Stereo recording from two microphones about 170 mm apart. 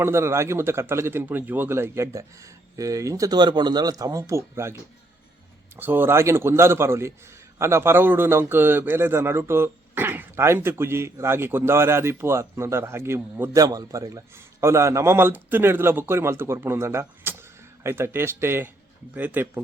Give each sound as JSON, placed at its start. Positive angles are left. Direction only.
{"t": 0.0, "sound": "a man's voice", "side_deg": -15}